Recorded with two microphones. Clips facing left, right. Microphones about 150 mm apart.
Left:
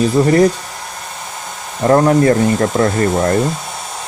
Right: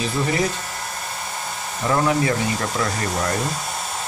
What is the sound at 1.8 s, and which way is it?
Speech, 45° left (ahead or behind).